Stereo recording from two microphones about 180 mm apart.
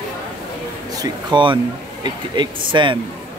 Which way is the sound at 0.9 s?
25° right (ahead or behind).